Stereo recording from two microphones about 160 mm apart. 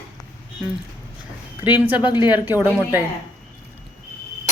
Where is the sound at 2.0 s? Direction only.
30° left (ahead or behind).